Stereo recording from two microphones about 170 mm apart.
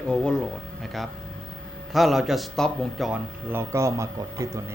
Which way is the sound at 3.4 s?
15° right (ahead or behind).